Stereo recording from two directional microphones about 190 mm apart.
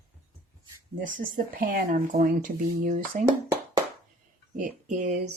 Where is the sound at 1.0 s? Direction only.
45° right (ahead or behind).